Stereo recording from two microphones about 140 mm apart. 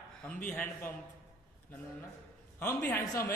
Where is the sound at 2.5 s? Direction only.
20° left (ahead or behind).